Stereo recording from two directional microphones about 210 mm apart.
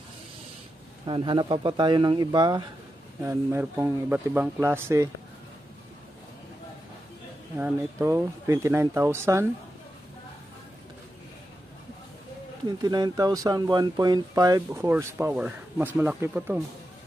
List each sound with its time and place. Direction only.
1.0 s speech: 25° right (ahead or behind)
7.5 s speech: 10° right (ahead or behind)
12.6 s speech: 20° right (ahead or behind)